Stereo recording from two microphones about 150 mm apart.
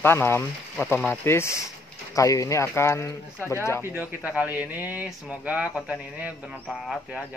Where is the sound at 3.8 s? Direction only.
15° right (ahead or behind).